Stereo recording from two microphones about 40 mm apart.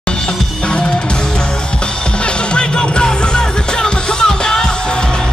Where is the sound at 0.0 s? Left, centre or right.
Left.